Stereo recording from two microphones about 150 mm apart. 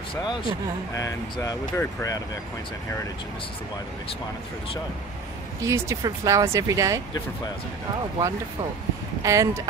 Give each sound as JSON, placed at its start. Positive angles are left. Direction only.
{"t": 0.2, "sound": "speech", "side_deg": 30}
{"t": 5.6, "sound": "speech", "side_deg": -20}
{"t": 9.2, "sound": "speech", "side_deg": -20}